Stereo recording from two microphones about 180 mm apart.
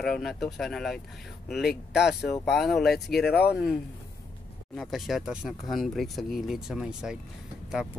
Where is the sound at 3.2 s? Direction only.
65° left (ahead or behind).